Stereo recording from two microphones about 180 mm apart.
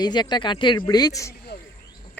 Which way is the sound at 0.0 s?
25° left (ahead or behind).